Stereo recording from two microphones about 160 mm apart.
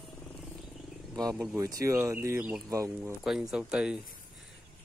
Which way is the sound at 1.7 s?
15° right (ahead or behind).